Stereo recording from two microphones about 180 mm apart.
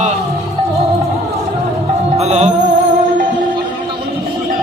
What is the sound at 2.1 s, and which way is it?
Music, 35° right (ahead or behind).